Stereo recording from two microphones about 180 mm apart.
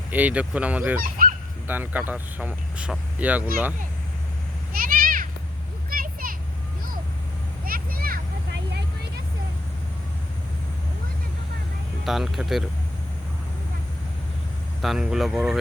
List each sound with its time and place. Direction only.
0.1 s speech: 10° right (ahead or behind)
1.0 s goose: 50° right (ahead or behind)
1.6 s speech: 10° right (ahead or behind)
4.8 s cat: 50° right (ahead or behind)
5.9 s children playing: 55° right (ahead or behind)
7.6 s a sound: 55° right (ahead or behind)
12.0 s speech: centre (ahead or behind)
14.8 s speech: centre (ahead or behind)